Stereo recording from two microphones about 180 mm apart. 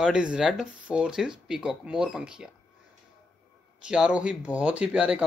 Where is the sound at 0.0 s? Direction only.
5° right (ahead or behind).